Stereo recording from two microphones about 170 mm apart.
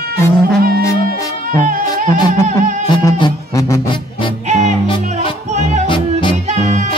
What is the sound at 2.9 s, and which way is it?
Music, 20° left (ahead or behind).